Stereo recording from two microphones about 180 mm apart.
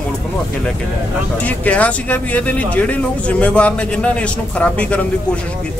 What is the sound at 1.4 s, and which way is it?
Speech, 10° left (ahead or behind).